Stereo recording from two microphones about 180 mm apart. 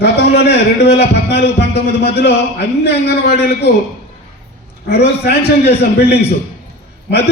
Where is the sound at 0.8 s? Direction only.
65° left (ahead or behind).